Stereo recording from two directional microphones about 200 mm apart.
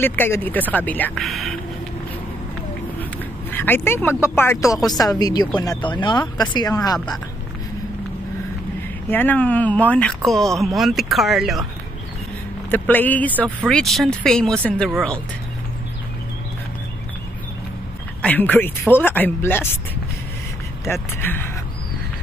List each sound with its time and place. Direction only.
0.0 s speech: 10° left (ahead or behind)
3.0 s speech: 10° left (ahead or behind)
9.1 s speech: 10° left (ahead or behind)
12.7 s speech: 10° left (ahead or behind)
18.2 s speech: 10° left (ahead or behind)
20.8 s speech: 10° left (ahead or behind)